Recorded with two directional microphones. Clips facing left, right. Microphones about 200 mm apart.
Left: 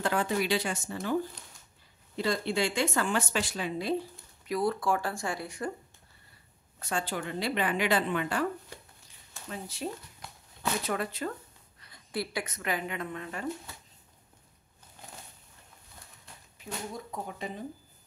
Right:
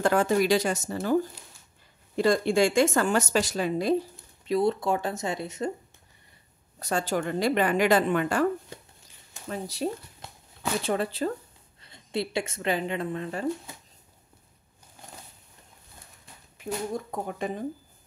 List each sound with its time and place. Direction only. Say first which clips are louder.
0.0 s a woman's voice: right 6 dB; 45° right (ahead or behind)
2.1 s a woman's voice: right 7 dB; 50° right (ahead or behind)
4.5 s speech: right 4 dB; 25° right (ahead or behind)
6.8 s a woman's voice: right 6 dB; 40° right (ahead or behind)
9.5 s speech: right 6 dB; 40° right (ahead or behind)
10.2 s walk: right 2 dB; 25° right (ahead or behind)
10.8 s speech: right 8 dB; 30° right (ahead or behind)
16.9 s a woman's voice: right 7 dB; 50° right (ahead or behind)